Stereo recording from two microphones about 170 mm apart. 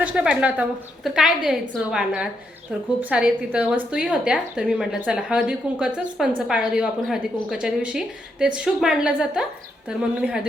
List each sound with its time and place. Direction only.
0.0 s a woman's voice: 5° right (ahead or behind)